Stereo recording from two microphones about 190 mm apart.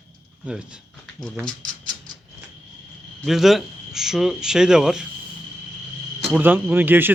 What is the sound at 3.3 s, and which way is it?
Speech, centre (ahead or behind).